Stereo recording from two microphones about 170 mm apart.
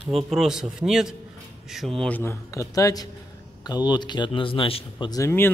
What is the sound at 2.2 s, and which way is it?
Speech, 15° left (ahead or behind).